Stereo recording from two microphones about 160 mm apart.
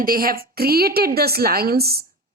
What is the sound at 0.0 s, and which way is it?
A woman's voice, 65° right (ahead or behind).